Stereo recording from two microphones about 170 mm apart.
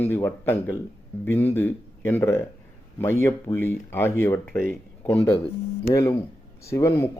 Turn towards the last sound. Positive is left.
turn(degrees=15)  # may be behind; listen again after turning